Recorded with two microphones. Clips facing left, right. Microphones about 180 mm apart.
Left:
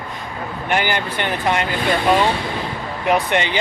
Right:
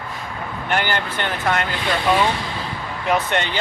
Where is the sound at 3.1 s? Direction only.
10° left (ahead or behind).